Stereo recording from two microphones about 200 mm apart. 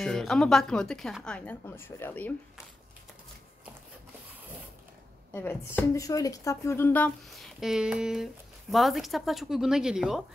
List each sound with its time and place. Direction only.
0.0 s speech: centre (ahead or behind)
5.3 s speech: 10° left (ahead or behind)